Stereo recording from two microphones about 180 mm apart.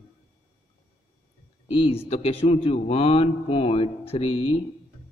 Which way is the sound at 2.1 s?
35° left (ahead or behind).